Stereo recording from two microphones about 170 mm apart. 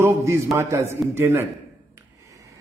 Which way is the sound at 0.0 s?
15° right (ahead or behind).